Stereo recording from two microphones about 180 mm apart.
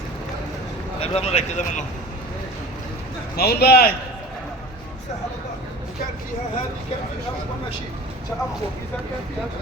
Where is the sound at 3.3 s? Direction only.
60° left (ahead or behind).